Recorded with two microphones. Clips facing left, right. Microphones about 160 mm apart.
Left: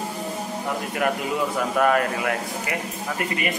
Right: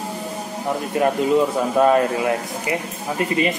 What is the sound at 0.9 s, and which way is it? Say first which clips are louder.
Speech: right 8 dB; 25° right (ahead or behind).